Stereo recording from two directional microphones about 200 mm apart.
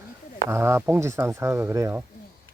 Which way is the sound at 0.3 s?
15° right (ahead or behind).